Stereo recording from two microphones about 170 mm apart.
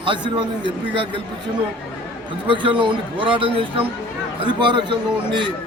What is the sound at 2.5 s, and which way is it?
Speech, 30° right (ahead or behind).